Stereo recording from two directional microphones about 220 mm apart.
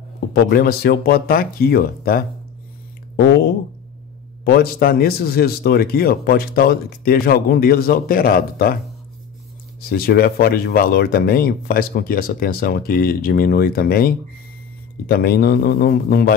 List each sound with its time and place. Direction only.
0.3 s speech: 45° left (ahead or behind)
4.5 s speech: 45° left (ahead or behind)
9.8 s speech: 40° left (ahead or behind)